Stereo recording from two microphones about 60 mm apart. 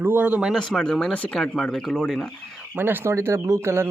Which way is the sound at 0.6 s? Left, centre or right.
Centre.